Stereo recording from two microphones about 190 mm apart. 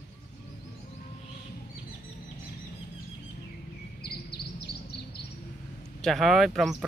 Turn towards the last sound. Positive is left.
turn(degrees=0)  # may be behind; listen again after turning